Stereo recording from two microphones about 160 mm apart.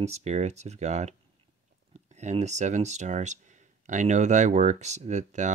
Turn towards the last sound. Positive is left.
turn(degrees=-50)  # may be behind; listen again after turning